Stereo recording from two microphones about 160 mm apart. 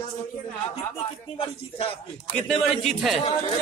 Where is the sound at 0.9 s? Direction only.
35° left (ahead or behind).